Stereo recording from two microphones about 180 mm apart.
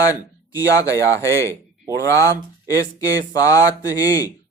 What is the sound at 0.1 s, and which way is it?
Speech, 20° left (ahead or behind).